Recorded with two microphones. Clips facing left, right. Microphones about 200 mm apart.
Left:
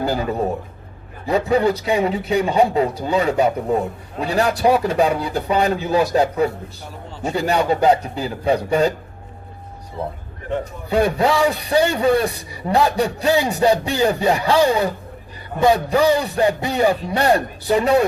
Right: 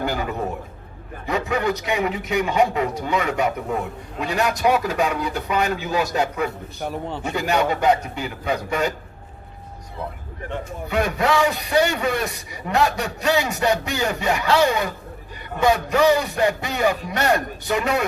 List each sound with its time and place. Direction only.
0.0 s a man's voice: 35° left (ahead or behind)
6.7 s speech: 65° right (ahead or behind)
7.3 s a man's voice: 30° left (ahead or behind)
10.6 s a man's voice: 30° left (ahead or behind)